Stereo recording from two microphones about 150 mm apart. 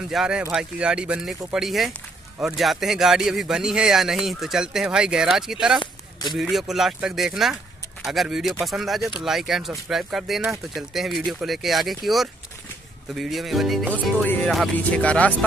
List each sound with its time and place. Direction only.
0.1 s speech: 5° right (ahead or behind)
6.2 s a man's voice: 25° left (ahead or behind)
6.5 s speech: centre (ahead or behind)
14.2 s speech: 10° left (ahead or behind)